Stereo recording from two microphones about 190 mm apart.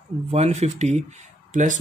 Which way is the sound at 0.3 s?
35° right (ahead or behind).